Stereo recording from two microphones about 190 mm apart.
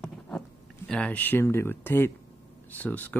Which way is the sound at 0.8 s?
5° left (ahead or behind).